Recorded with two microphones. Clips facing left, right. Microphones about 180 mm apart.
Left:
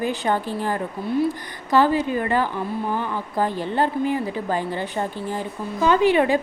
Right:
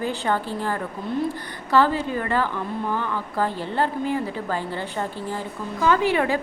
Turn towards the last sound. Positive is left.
turn(degrees=20)  # may be behind; listen again after turning